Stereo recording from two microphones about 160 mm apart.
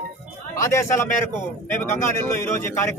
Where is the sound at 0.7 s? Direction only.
15° left (ahead or behind).